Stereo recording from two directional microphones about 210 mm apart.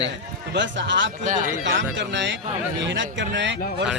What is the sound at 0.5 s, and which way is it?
A man's voice, 60° right (ahead or behind).